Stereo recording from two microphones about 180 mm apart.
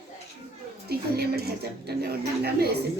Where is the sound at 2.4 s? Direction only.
60° right (ahead or behind).